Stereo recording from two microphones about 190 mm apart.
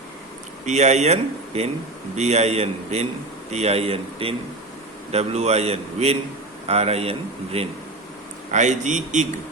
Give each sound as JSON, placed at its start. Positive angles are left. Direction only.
{"t": 0.6, "sound": "speech", "side_deg": -35}